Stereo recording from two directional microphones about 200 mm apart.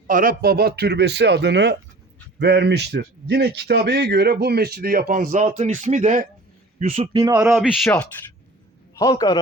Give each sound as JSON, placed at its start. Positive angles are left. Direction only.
{"t": 0.1, "sound": "a man's voice", "side_deg": -45}
{"t": 7.5, "sound": "speech", "side_deg": -5}
{"t": 9.0, "sound": "a man's voice", "side_deg": 20}